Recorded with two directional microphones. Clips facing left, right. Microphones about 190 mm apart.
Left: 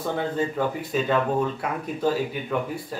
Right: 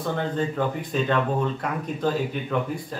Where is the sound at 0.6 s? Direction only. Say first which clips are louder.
Even; 5° left (ahead or behind).